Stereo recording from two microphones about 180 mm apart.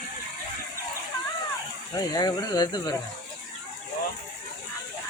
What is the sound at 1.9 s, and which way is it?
Speech, 20° left (ahead or behind).